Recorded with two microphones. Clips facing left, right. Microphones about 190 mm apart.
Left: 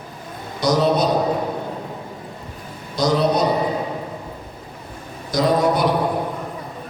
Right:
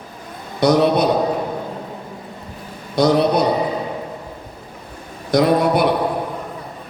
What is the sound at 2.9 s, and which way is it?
Speech, 60° right (ahead or behind).